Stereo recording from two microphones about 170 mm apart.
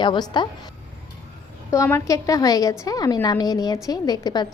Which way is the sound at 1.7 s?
15° left (ahead or behind).